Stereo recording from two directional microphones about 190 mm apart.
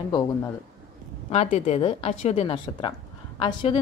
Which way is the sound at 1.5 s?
35° left (ahead or behind).